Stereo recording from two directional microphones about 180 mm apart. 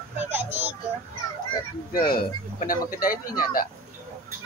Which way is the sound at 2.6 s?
50° left (ahead or behind).